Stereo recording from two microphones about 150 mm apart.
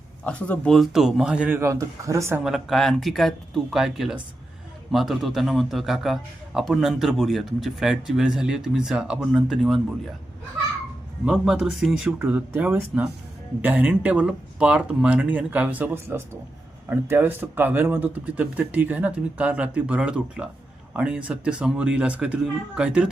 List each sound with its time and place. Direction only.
0.3 s a man's voice: 10° left (ahead or behind); by 1.5 s 5° right (ahead or behind)
1.5 s speech: 20° right (ahead or behind)
2.4 s a man's voice: centre (ahead or behind)
11.3 s a man's voice: 5° right (ahead or behind)